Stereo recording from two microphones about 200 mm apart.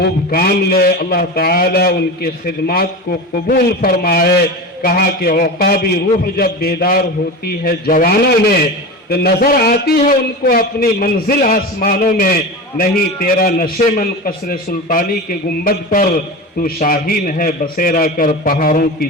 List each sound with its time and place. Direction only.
0.0 s a man's voice: 50° left (ahead or behind)